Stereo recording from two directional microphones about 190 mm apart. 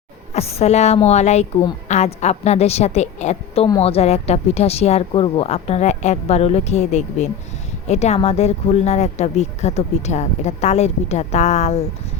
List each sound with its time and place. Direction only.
0.3 s speech: 35° left (ahead or behind)